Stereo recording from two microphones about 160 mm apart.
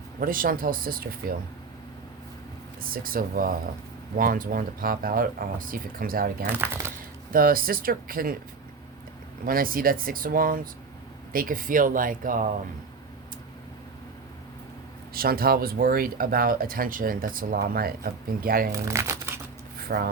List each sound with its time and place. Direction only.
0.2 s speech: 60° right (ahead or behind)
2.8 s speech: 65° right (ahead or behind)
6.5 s speech: 15° right (ahead or behind)
7.3 s speech: 65° right (ahead or behind)
9.5 s speech: 65° right (ahead or behind)
15.1 s speech: 70° right (ahead or behind)
18.7 s speech: 15° right (ahead or behind)
19.8 s a sound: 75° right (ahead or behind)